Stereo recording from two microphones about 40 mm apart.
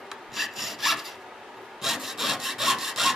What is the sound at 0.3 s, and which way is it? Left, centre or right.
Sawing, centre.